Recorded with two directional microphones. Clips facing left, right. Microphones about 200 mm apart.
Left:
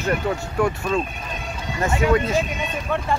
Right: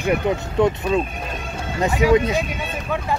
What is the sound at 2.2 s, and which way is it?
Speech, 15° right (ahead or behind).